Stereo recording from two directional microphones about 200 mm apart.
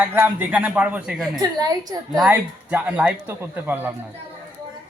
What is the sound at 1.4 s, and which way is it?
Speech, 20° right (ahead or behind).